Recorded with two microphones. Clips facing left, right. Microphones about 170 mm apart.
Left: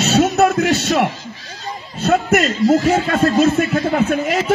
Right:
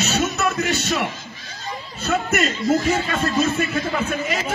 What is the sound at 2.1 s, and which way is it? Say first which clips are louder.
A man's voice: left 6 dB; 60° left (ahead or behind).